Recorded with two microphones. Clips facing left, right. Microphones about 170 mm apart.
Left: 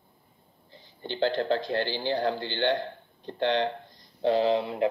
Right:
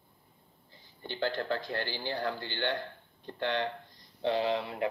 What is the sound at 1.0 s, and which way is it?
Speech, 25° left (ahead or behind).